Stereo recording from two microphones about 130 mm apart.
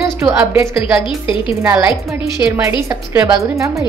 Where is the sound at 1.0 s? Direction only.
40° left (ahead or behind).